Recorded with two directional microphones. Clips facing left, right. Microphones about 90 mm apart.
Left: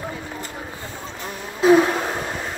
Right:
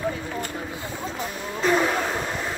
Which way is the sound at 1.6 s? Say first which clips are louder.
Left 6 dB; 10° left (ahead or behind).